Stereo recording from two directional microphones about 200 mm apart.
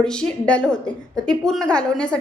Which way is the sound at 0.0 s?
5° left (ahead or behind).